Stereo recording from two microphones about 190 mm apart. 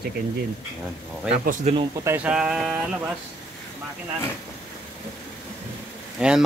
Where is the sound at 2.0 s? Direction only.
10° right (ahead or behind).